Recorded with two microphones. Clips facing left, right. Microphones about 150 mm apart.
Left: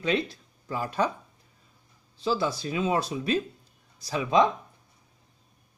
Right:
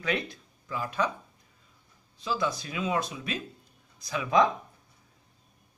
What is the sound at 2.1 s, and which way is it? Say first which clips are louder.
Speech: left 3 dB; 30° left (ahead or behind).